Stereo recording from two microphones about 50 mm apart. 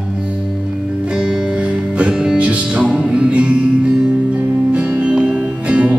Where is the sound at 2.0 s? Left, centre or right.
Centre.